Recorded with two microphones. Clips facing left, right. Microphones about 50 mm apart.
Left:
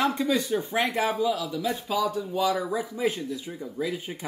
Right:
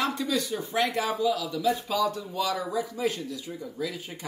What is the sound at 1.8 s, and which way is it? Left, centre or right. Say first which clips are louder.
A man's voice: left 1 dB; centre.